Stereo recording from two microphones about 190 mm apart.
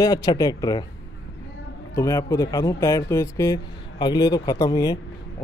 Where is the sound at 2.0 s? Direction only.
15° left (ahead or behind).